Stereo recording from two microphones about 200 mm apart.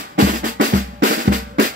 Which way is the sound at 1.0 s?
50° right (ahead or behind).